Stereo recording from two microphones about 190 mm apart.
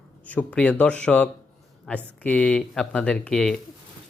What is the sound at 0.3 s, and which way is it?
Speech, 5° left (ahead or behind).